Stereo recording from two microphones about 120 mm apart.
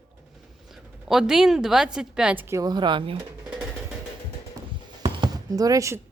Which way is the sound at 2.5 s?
35° right (ahead or behind).